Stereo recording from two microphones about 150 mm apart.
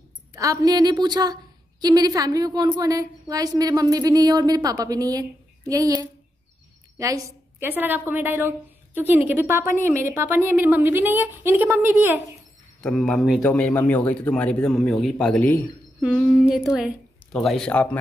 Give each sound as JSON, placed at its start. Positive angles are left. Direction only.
{"t": 0.3, "sound": "a woman's voice", "side_deg": -20}
{"t": 12.8, "sound": "a man's voice", "side_deg": 5}
{"t": 16.0, "sound": "speech", "side_deg": -5}